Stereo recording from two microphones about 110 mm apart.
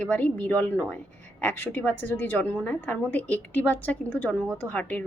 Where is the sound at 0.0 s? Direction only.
15° left (ahead or behind).